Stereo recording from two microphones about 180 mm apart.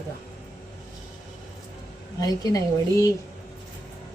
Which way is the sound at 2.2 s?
20° left (ahead or behind).